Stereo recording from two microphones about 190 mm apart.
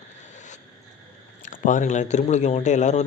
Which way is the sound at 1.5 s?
40° left (ahead or behind).